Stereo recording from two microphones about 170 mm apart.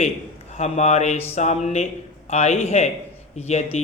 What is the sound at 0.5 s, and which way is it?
A man's voice, 40° left (ahead or behind).